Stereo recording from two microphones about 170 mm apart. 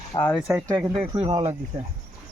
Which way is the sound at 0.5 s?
20° right (ahead or behind).